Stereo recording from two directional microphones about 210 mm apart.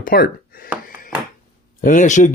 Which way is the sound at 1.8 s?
35° left (ahead or behind).